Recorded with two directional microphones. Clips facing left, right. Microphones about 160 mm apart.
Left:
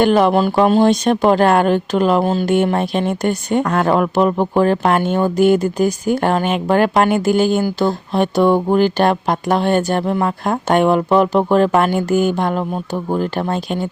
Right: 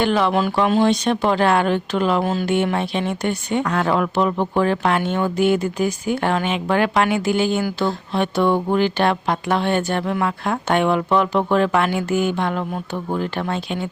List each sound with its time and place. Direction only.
0.0 s speech: 45° left (ahead or behind)
2.6 s speech: 45° left (ahead or behind)